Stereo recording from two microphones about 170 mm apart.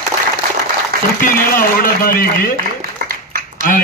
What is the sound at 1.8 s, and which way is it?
Speech, 60° left (ahead or behind).